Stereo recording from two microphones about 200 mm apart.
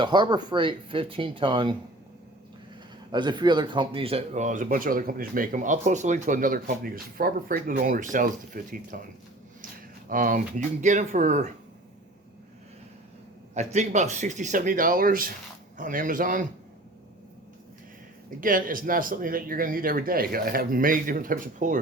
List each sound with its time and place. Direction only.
0.0 s speech: 20° right (ahead or behind)
3.1 s speech: 20° right (ahead or behind); by 9.0 s 45° right (ahead or behind)
10.1 s speech: 45° right (ahead or behind)
13.5 s speech: 35° right (ahead or behind)
18.3 s speech: 45° right (ahead or behind)